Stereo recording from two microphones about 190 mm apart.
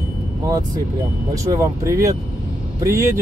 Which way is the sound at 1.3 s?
15° right (ahead or behind).